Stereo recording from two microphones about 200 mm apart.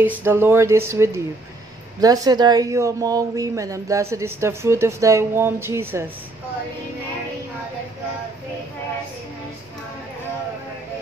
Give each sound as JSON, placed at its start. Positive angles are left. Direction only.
{"t": 0.0, "sound": "speech", "side_deg": -10}